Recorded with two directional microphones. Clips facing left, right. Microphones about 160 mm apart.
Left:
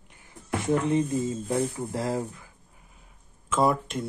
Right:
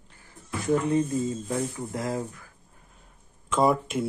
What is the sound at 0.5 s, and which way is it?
Speech, 25° left (ahead or behind).